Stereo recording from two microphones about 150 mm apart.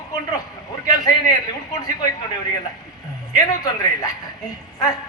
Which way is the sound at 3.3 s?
25° left (ahead or behind).